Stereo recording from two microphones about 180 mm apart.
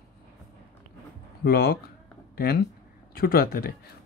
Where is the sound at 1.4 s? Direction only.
55° left (ahead or behind).